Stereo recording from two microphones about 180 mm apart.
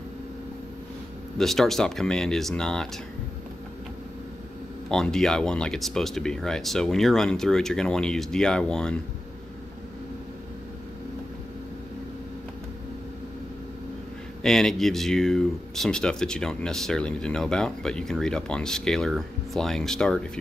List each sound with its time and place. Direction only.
1.4 s speech: centre (ahead or behind)
4.9 s speech: 5° left (ahead or behind)
14.4 s speech: centre (ahead or behind)